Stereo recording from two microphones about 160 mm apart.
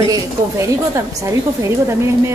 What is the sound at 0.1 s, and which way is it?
A woman's voice, 20° right (ahead or behind).